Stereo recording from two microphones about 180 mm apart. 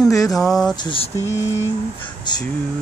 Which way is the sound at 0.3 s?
Centre (ahead or behind).